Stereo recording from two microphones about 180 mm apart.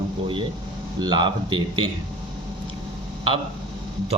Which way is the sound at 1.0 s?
25° right (ahead or behind).